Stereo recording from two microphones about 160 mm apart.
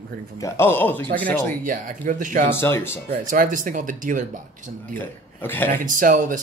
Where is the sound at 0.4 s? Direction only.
15° left (ahead or behind).